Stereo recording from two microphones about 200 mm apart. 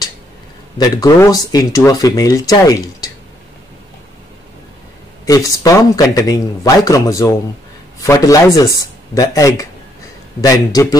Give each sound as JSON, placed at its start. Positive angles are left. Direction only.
{"t": 0.7, "sound": "speech", "side_deg": 20}
{"t": 5.2, "sound": "speech", "side_deg": 15}